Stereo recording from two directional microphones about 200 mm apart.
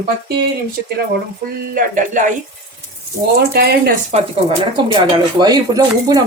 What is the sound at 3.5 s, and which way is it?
Speech, 50° right (ahead or behind).